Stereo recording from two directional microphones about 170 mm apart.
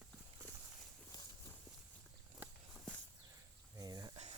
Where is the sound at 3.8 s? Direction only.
20° right (ahead or behind).